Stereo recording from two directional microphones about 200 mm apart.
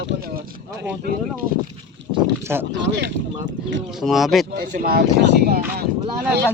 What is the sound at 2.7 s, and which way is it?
Speech, 60° right (ahead or behind).